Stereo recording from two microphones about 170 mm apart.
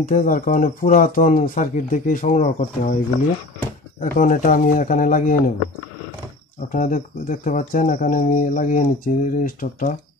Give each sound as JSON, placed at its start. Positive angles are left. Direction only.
{"t": 0.0, "sound": "speech", "side_deg": 50}
{"t": 4.0, "sound": "speech", "side_deg": 50}
{"t": 6.7, "sound": "speech", "side_deg": 50}